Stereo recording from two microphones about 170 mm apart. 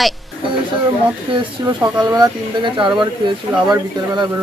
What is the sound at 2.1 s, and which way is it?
Speech, 25° right (ahead or behind).